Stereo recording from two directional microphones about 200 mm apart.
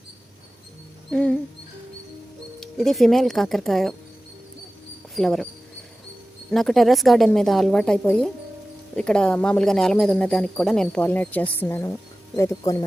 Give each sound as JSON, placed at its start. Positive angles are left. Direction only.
{"t": 1.1, "sound": "speech", "side_deg": 5}
{"t": 2.6, "sound": "speech", "side_deg": 0}
{"t": 5.1, "sound": "speech", "side_deg": 0}
{"t": 6.5, "sound": "speech", "side_deg": 0}